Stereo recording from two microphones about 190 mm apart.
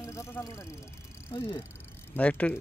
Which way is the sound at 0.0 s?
15° left (ahead or behind).